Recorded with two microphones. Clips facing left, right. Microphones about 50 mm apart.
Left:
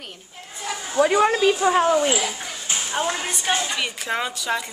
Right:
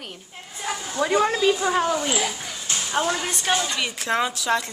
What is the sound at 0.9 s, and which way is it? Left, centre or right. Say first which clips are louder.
A woman's voice: left 4 dB; left.